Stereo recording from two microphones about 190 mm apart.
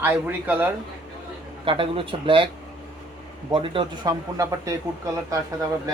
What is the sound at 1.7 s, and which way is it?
Speech, 30° right (ahead or behind).